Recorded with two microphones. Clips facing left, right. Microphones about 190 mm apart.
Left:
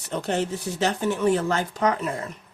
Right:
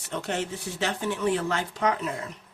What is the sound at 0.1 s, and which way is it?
Speech, 35° left (ahead or behind).